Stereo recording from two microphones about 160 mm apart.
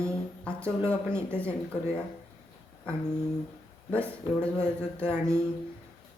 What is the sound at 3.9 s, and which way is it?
Speech, 5° left (ahead or behind).